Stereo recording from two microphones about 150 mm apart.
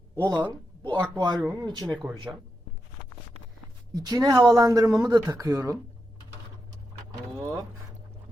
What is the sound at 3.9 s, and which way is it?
Speech, 25° right (ahead or behind).